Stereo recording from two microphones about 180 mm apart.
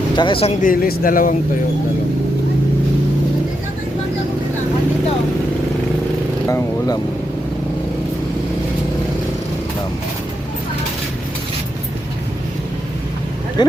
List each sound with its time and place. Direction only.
0.2 s speech: 30° left (ahead or behind)
0.6 s speech: 50° left (ahead or behind)
6.5 s speech: 20° left (ahead or behind)
13.6 s speech: 25° left (ahead or behind)